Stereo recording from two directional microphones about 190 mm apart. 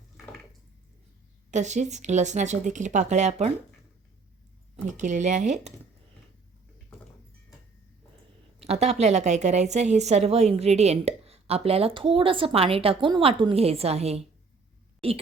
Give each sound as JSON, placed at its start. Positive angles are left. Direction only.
{"t": 1.5, "sound": "a woman's voice", "side_deg": -40}
{"t": 4.9, "sound": "a woman's voice", "side_deg": -40}
{"t": 8.6, "sound": "a woman's voice", "side_deg": -35}